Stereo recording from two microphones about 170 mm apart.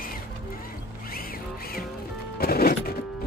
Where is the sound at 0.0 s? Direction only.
55° left (ahead or behind).